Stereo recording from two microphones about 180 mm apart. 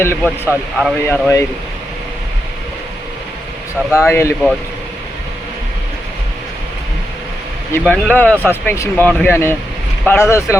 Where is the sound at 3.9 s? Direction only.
15° left (ahead or behind).